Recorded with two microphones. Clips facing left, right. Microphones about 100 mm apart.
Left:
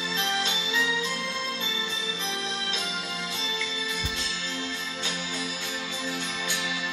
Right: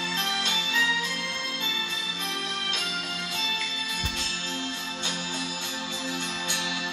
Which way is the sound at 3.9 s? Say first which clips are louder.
Left 1 dB; 40° right (ahead or behind).